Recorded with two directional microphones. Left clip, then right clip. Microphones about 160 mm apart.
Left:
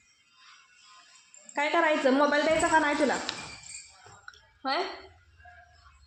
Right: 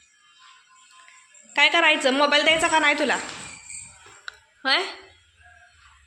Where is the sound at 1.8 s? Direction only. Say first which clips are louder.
Right 5 dB; 10° left (ahead or behind).